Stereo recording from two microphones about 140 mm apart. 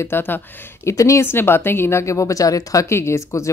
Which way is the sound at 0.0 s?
15° left (ahead or behind).